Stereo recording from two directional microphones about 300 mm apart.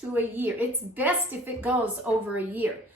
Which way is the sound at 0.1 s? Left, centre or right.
Centre.